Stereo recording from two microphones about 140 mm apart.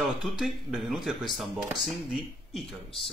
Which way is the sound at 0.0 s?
Centre (ahead or behind).